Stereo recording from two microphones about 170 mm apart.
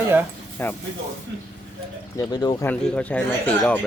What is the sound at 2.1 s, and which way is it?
Speech, 25° left (ahead or behind).